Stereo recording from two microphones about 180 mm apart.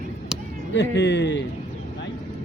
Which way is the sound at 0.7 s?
75° left (ahead or behind).